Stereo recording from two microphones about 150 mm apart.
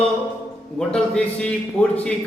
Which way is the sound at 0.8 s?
5° left (ahead or behind).